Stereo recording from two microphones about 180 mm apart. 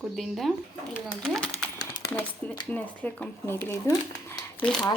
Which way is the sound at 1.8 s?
20° left (ahead or behind).